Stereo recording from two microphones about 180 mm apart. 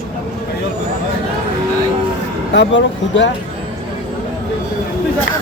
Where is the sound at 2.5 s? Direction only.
85° left.